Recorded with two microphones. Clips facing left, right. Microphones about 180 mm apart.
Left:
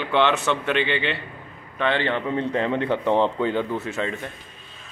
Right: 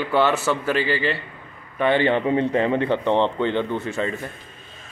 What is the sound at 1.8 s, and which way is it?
Speech, 10° right (ahead or behind).